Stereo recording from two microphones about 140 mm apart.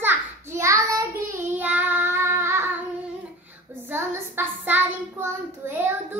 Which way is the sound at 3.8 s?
15° right (ahead or behind).